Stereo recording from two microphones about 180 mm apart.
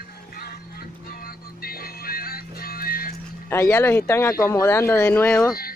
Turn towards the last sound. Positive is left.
turn(degrees=10)  # may be behind; listen again after turning